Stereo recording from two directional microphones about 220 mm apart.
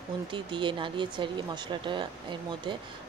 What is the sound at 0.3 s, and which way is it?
Speech, 20° right (ahead or behind).